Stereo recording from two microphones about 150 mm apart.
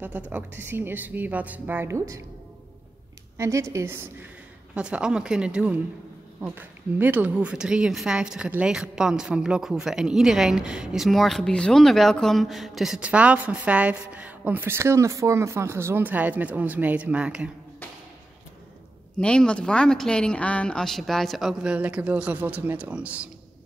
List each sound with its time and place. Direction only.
0.3 s speech: 15° right (ahead or behind)
3.3 s a woman's voice: 20° right (ahead or behind)
19.1 s speech: 5° left (ahead or behind)